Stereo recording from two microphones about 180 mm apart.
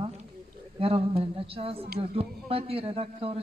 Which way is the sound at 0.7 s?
30° right (ahead or behind).